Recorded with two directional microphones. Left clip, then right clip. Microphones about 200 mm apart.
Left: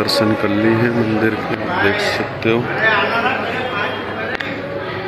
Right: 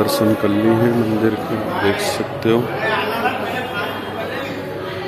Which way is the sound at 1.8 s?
25° right (ahead or behind).